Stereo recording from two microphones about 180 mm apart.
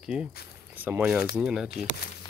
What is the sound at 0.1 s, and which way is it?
Speech, 5° right (ahead or behind).